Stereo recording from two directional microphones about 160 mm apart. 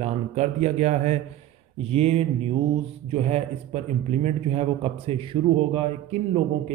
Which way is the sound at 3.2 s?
45° right (ahead or behind).